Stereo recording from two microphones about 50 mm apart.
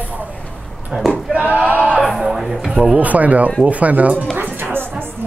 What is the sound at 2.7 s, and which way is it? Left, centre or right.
Speech, right.